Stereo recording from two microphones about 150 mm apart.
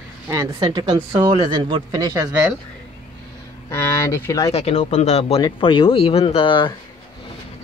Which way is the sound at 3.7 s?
15° left (ahead or behind).